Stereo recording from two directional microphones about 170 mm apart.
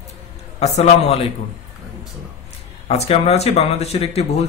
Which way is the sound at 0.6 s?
40° left (ahead or behind).